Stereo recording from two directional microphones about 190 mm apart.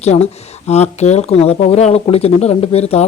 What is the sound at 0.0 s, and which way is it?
Speech, 35° left (ahead or behind).